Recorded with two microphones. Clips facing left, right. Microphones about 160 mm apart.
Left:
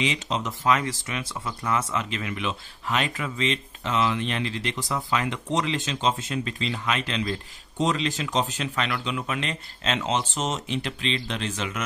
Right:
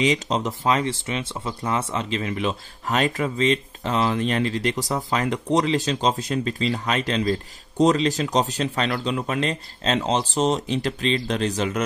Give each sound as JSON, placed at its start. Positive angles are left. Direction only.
{"t": 0.0, "sound": "speech", "side_deg": -40}